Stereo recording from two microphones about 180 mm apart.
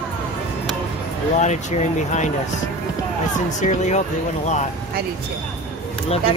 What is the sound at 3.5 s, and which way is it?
Speech, 40° left (ahead or behind).